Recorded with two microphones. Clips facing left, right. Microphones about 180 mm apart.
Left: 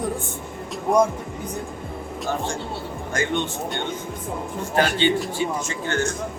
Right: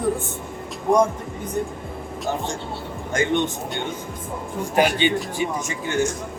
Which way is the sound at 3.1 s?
20° right (ahead or behind).